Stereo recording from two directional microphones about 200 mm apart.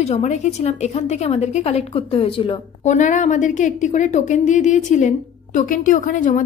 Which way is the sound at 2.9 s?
40° left (ahead or behind).